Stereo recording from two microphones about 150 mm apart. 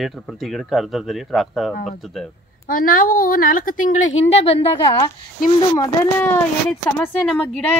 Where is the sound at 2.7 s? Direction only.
70° left (ahead or behind); by 4.7 s 40° left (ahead or behind).